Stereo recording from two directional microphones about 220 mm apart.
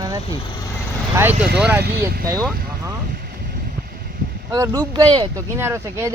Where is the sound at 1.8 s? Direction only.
45° right (ahead or behind).